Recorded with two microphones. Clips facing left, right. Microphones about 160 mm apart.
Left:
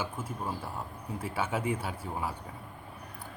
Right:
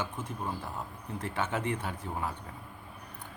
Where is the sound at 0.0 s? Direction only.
5° left (ahead or behind).